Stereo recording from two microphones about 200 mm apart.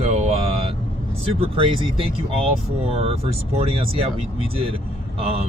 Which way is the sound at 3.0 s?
30° right (ahead or behind).